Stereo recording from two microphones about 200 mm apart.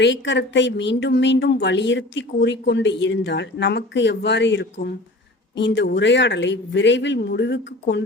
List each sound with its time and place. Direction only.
0.0 s speech: 65° left (ahead or behind)